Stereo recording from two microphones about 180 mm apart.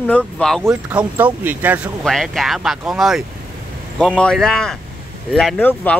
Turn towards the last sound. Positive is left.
turn(degrees=10)  # may be behind; listen again after turning